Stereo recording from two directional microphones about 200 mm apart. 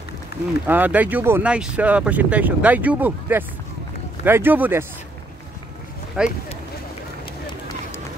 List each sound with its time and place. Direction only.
0.3 s speech: 50° left (ahead or behind)
0.7 s speech: 10° right (ahead or behind)
6.2 s speech: 5° right (ahead or behind)